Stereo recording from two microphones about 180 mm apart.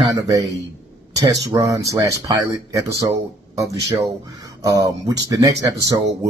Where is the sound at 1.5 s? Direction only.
20° right (ahead or behind).